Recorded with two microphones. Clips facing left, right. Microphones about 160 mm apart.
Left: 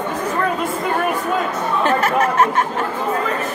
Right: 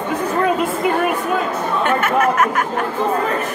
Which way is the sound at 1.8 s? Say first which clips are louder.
Right 1 dB; 35° left (ahead or behind).